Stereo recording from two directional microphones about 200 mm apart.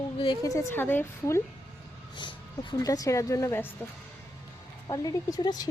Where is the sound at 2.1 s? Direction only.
20° left (ahead or behind).